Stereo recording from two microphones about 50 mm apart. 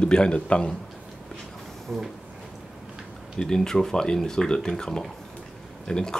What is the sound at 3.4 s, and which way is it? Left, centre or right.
Speech, centre.